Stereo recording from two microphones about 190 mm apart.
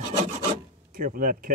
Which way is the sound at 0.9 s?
45° right (ahead or behind).